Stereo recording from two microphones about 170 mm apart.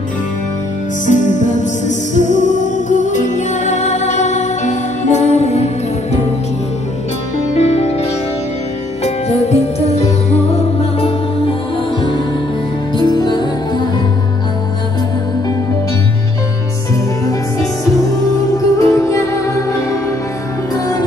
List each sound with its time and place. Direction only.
1.0 s music: 45° left (ahead or behind)
7.5 s music: 40° left (ahead or behind)
12.9 s music: 25° left (ahead or behind)
18.8 s music: 20° left (ahead or behind)